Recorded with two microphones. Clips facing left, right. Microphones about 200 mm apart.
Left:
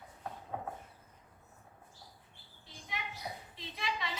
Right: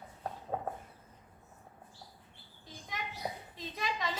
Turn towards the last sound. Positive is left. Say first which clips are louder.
# right 3 dB
turn(degrees=-45)  # may be behind; listen again after turning